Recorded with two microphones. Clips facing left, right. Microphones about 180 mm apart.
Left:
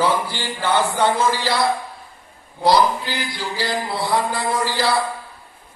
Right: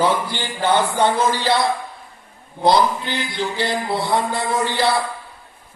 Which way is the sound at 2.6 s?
25° right (ahead or behind).